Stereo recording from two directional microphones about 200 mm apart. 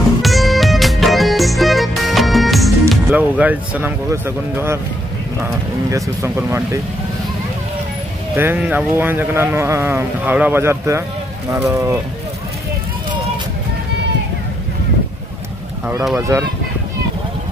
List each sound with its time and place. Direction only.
0.2 s music: centre (ahead or behind)
2.9 s speech: 5° right (ahead or behind)
8.4 s speech: 10° right (ahead or behind)
16.2 s speech: 15° right (ahead or behind)